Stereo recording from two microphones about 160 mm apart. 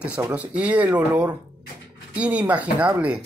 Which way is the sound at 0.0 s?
10° right (ahead or behind).